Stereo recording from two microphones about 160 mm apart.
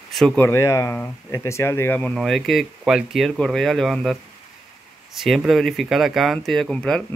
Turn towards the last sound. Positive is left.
turn(degrees=5)  # may be behind; listen again after turning